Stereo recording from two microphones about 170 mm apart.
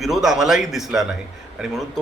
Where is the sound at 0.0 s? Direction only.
Centre (ahead or behind).